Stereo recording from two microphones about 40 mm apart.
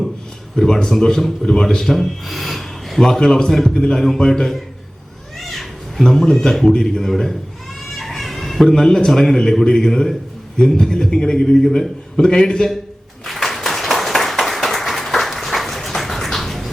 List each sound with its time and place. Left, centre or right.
0.5 s a man's voice: centre
5.4 s cat: centre
6.0 s a man's voice: centre
7.9 s a sound: centre
8.7 s a man's voice: centre
13.2 s a sound: centre